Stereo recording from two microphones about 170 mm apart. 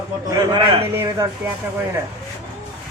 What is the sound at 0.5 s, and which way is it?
Speech, 30° right (ahead or behind).